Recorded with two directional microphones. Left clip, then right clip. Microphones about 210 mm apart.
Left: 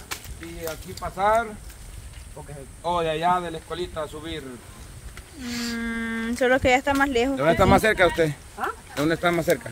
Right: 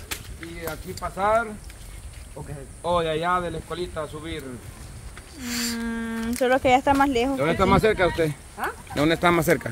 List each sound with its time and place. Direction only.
1.0 s speech: 10° right (ahead or behind)
2.8 s speech: 10° left (ahead or behind)
5.4 s a sound: 50° right (ahead or behind)
5.8 s speech: 5° left (ahead or behind)
7.3 s speech: 25° left (ahead or behind)
8.6 s speech: 5° right (ahead or behind)
8.9 s speech: 30° right (ahead or behind); by 9.7 s 50° right (ahead or behind)